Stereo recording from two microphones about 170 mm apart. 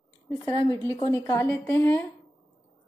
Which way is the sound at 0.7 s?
20° left (ahead or behind).